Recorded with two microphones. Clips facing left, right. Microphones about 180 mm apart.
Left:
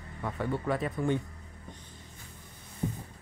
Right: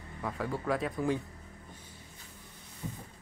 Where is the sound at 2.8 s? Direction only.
50° left (ahead or behind).